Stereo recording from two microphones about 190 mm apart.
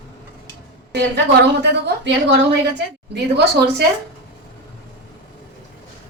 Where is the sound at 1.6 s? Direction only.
65° right (ahead or behind).